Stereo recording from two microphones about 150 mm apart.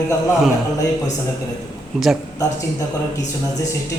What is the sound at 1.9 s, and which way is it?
Speech, centre (ahead or behind).